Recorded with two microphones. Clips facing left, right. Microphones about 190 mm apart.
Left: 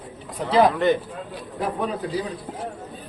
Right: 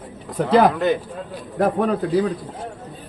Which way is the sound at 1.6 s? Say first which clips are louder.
Right 7 dB; 55° right (ahead or behind).